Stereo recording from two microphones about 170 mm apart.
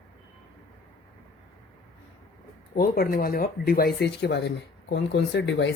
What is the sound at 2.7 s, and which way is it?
Speech, 60° left (ahead or behind).